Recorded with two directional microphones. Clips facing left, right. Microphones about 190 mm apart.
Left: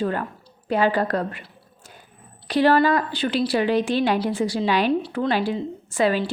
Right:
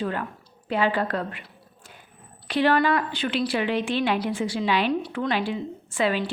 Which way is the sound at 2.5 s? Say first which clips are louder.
Left 3 dB; 40° left (ahead or behind).